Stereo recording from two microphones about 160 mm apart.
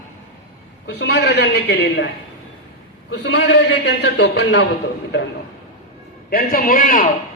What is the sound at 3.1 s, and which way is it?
A man's voice, 90° left.